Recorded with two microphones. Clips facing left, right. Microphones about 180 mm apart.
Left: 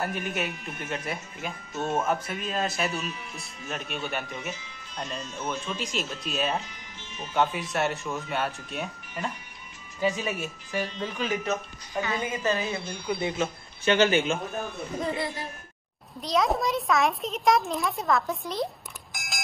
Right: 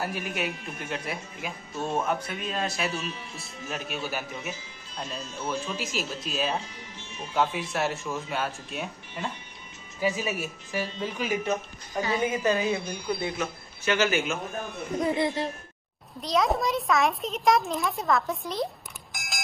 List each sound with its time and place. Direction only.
0.0 s speech: centre (ahead or behind)
13.2 s a man's voice: 30° left (ahead or behind)
15.1 s speech: 20° right (ahead or behind)
16.2 s speech: centre (ahead or behind)
19.1 s mechanisms: centre (ahead or behind)